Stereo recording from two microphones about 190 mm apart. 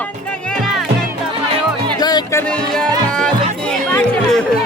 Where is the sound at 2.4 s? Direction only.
5° left (ahead or behind).